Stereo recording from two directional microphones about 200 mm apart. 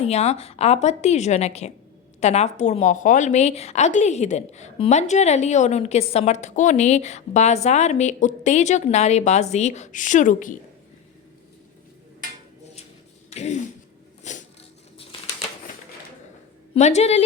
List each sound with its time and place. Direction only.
0.0 s a woman's voice: 30° left (ahead or behind)
13.3 s a sound: 35° left (ahead or behind)
16.7 s a woman's voice: 35° left (ahead or behind)